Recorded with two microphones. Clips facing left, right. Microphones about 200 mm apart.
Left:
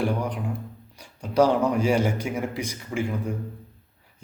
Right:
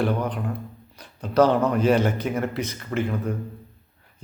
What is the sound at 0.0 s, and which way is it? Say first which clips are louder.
Speech: right 2 dB; 10° left (ahead or behind).